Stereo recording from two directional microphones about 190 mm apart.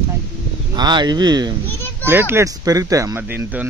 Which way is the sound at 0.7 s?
25° right (ahead or behind).